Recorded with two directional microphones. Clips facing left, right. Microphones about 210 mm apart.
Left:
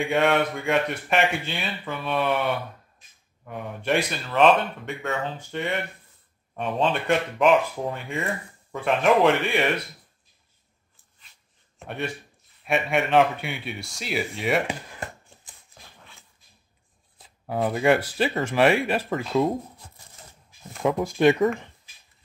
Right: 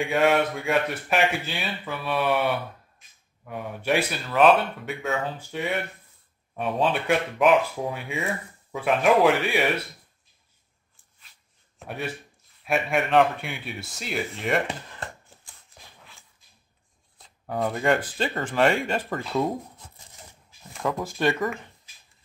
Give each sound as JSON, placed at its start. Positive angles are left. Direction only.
{"t": 0.0, "sound": "speech", "side_deg": 0}
{"t": 11.8, "sound": "speech", "side_deg": 0}
{"t": 17.2, "sound": "speech", "side_deg": 5}
{"t": 20.8, "sound": "speech", "side_deg": 15}